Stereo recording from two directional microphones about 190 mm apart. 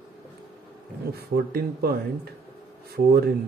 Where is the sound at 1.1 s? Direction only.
55° right (ahead or behind).